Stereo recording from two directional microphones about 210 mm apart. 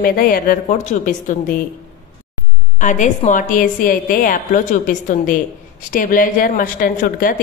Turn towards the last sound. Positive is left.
turn(degrees=40)  # may be behind; listen again after turning